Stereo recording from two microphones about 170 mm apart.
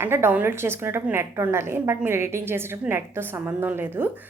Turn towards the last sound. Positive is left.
turn(degrees=-15)  # may be behind; listen again after turning